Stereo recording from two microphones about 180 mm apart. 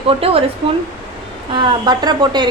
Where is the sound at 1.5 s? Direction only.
25° right (ahead or behind).